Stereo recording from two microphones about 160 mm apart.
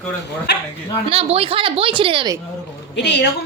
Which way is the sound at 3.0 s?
90° left.